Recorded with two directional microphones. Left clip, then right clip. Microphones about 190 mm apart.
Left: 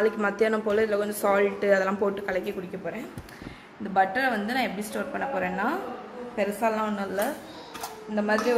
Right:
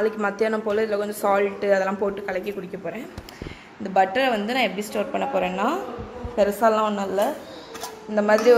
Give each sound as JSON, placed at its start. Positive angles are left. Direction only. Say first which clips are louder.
{"t": 0.0, "sound": "speech", "louder": "right 1 dB", "side_deg": 0}
{"t": 3.9, "sound": "a woman's voice", "louder": "right 4 dB", "side_deg": -25}
{"t": 8.1, "sound": "a woman's voice", "louder": "right 8 dB", "side_deg": -30}